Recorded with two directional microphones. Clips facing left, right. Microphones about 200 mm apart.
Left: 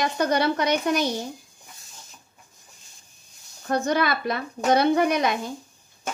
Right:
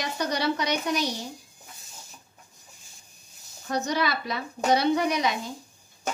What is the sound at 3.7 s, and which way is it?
Speech, 55° left (ahead or behind).